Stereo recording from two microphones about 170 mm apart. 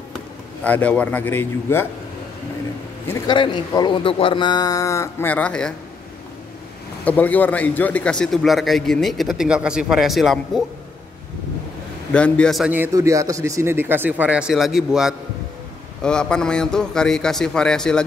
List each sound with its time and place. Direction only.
0.7 s a man's voice: 10° left (ahead or behind)
3.3 s speech: 25° left (ahead or behind); by 5.8 s 5° left (ahead or behind)
7.1 s a man's voice: 10° left (ahead or behind)
12.1 s a man's voice: 5° left (ahead or behind)
12.7 s a man's voice: 15° right (ahead or behind); by 18.0 s 5° left (ahead or behind)